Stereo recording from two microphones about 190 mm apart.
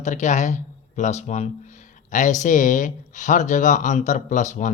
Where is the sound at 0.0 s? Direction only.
40° left (ahead or behind).